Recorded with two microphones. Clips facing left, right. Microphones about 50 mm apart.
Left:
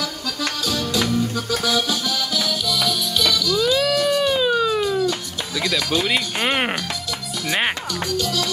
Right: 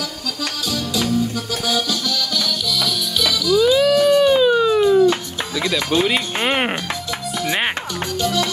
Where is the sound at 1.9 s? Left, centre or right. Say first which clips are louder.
Right 1 dB; centre.